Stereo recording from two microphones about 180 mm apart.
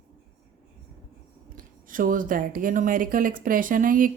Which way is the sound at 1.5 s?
50° right (ahead or behind).